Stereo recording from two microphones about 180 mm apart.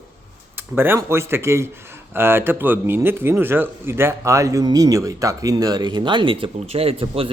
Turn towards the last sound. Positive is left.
turn(degrees=-30)  # may be behind; listen again after turning